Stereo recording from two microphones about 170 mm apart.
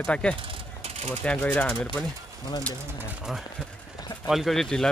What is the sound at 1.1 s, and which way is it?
Speech, 10° left (ahead or behind).